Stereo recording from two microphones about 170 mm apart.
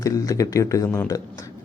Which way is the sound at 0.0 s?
20° left (ahead or behind).